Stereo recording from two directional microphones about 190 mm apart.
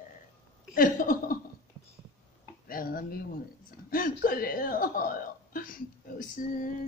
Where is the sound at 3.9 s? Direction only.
50° left (ahead or behind).